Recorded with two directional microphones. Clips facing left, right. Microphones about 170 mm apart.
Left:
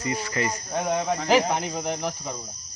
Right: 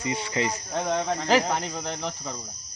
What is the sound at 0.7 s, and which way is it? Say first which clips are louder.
Speech: left 3 dB; 10° left (ahead or behind).